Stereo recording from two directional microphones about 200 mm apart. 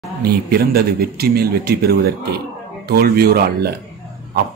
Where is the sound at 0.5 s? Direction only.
50° right (ahead or behind).